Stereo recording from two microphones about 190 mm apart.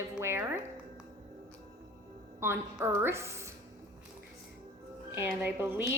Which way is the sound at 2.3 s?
15° right (ahead or behind).